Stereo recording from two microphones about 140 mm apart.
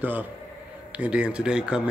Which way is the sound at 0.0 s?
15° right (ahead or behind).